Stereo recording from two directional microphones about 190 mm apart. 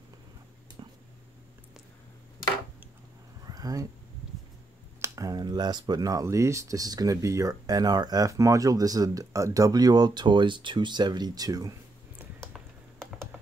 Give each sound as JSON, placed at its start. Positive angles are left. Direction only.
{"t": 0.8, "sound": "a sound", "side_deg": -25}
{"t": 3.4, "sound": "cat", "side_deg": -20}
{"t": 5.0, "sound": "speech", "side_deg": -15}